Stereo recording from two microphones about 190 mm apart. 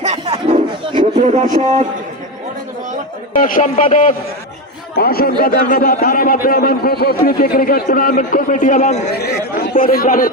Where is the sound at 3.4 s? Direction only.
45° left (ahead or behind).